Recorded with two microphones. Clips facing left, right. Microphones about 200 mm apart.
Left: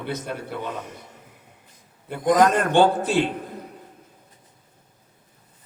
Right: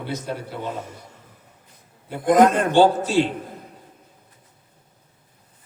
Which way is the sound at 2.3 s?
55° right (ahead or behind).